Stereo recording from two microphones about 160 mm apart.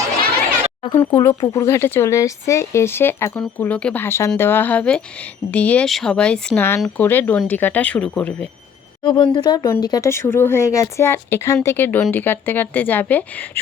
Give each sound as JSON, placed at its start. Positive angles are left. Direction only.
{"t": 0.9, "sound": "speech", "side_deg": 30}
{"t": 1.2, "sound": "speech", "side_deg": 20}
{"t": 9.0, "sound": "speech", "side_deg": 30}